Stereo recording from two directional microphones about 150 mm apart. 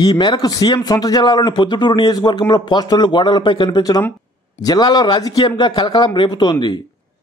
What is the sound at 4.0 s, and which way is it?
Speech, 15° left (ahead or behind).